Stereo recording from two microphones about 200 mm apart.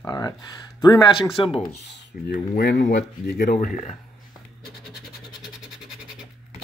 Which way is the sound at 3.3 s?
40° left (ahead or behind).